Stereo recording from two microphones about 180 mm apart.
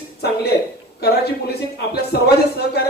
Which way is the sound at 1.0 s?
65° left (ahead or behind).